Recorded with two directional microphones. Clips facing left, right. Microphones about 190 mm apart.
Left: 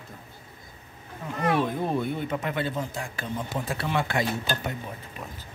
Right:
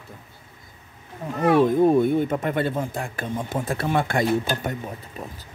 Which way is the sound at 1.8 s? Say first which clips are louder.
Right 10 dB; 45° right (ahead or behind).